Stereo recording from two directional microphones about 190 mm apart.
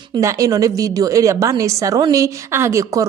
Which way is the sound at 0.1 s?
15° right (ahead or behind).